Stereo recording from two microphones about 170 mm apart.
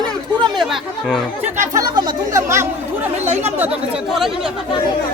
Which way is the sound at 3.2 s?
40° right (ahead or behind).